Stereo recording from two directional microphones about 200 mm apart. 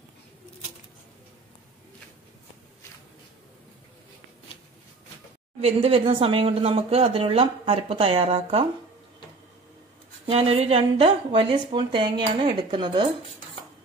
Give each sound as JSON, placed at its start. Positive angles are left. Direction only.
{"t": 5.6, "sound": "speech", "side_deg": -30}
{"t": 10.2, "sound": "speech", "side_deg": -30}